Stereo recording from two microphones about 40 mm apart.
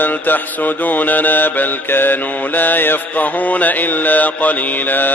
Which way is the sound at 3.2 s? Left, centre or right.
Left.